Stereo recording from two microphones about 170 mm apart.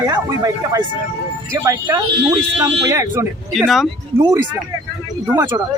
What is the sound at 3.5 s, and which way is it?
Speech, centre (ahead or behind).